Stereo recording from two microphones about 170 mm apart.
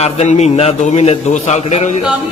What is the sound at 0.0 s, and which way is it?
A man's voice, 40° left (ahead or behind).